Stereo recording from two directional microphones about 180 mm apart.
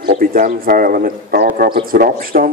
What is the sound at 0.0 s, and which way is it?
A man's voice, 55° right (ahead or behind).